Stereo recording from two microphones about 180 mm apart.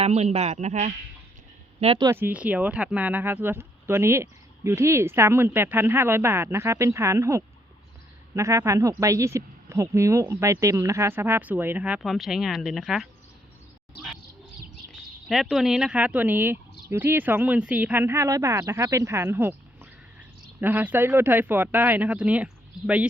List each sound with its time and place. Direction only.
0.0 s speech: 35° right (ahead or behind)
2.0 s speech: 10° right (ahead or behind)
15.3 s speech: centre (ahead or behind)